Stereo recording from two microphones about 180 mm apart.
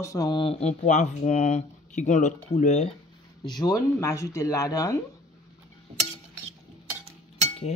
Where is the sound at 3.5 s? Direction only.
20° left (ahead or behind).